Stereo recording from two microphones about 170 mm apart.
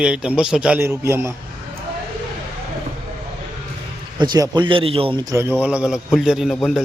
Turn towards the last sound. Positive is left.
turn(degrees=0)  # may be behind; listen again after turning